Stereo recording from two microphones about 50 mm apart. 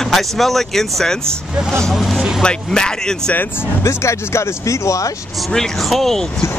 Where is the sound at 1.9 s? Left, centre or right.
Centre.